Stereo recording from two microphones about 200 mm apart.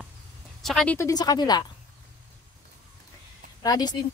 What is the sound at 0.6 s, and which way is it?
Speech, centre (ahead or behind).